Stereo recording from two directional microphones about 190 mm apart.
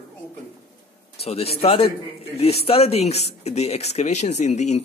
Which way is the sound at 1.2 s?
30° left (ahead or behind).